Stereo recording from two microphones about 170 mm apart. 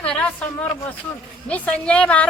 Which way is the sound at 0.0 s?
5° left (ahead or behind).